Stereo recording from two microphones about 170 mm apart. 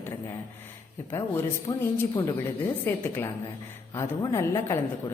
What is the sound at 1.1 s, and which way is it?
A woman's voice, 15° left (ahead or behind).